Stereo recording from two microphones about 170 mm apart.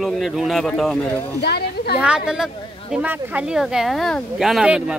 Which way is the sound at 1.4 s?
70° left (ahead or behind).